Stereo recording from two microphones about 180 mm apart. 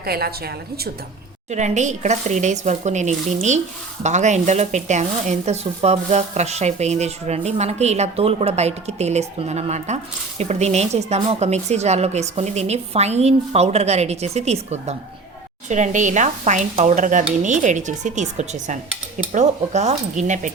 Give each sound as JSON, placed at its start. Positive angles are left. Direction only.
{"t": 0.0, "sound": "a woman's voice", "side_deg": -60}
{"t": 1.5, "sound": "speech", "side_deg": -40}